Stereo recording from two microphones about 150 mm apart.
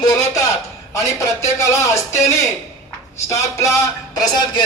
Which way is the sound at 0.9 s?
20° left (ahead or behind).